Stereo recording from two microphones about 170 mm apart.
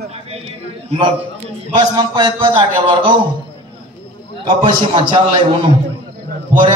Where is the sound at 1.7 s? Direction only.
30° right (ahead or behind).